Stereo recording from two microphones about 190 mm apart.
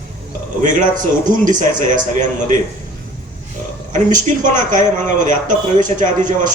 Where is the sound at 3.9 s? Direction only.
40° right (ahead or behind).